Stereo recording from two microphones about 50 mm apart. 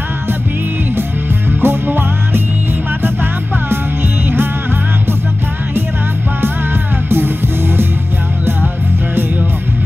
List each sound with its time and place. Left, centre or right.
1.6 s music: right
7.1 s music: right